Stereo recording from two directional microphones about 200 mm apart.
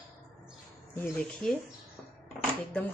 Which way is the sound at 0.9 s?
5° left (ahead or behind).